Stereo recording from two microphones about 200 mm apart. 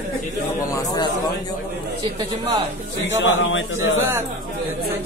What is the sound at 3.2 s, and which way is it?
Speech, 70° left (ahead or behind).